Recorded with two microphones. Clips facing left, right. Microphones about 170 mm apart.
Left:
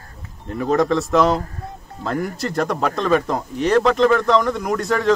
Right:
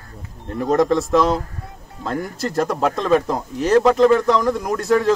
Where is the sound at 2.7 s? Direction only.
5° right (ahead or behind).